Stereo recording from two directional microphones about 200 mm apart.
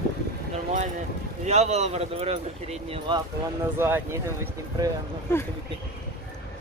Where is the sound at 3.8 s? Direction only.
10° right (ahead or behind).